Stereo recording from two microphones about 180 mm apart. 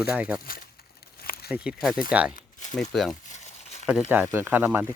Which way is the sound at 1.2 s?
55° left (ahead or behind).